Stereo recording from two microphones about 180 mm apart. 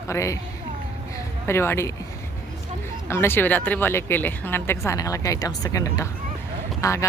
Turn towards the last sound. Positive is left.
turn(degrees=15)  # may be behind; listen again after turning